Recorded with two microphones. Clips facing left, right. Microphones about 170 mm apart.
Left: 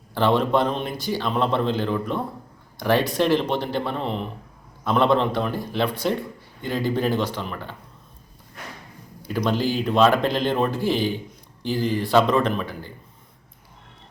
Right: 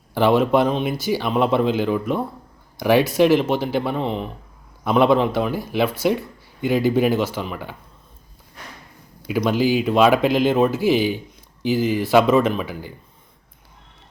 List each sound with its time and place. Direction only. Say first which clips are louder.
0.1 s speech: right 3 dB; 10° right (ahead or behind)
9.2 s speech: right 4 dB; 5° right (ahead or behind)